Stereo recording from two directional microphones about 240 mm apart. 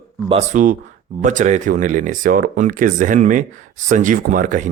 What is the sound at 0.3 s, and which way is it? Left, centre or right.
Speech, right.